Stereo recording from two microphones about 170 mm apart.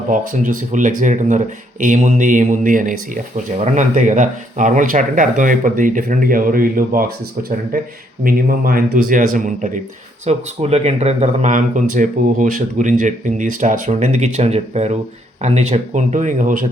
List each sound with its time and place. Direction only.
0.1 s speech: 50° right (ahead or behind)
8.2 s speech: 55° right (ahead or behind)